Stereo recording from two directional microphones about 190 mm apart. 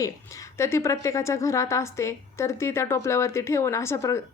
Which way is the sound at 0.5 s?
15° left (ahead or behind).